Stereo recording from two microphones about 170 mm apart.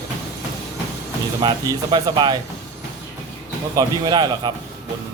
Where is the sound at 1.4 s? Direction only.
25° right (ahead or behind).